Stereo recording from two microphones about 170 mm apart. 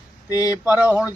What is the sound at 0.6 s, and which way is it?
Speech, 10° right (ahead or behind).